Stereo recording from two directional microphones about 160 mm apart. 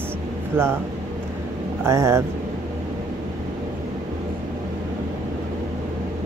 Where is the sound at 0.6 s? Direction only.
15° right (ahead or behind).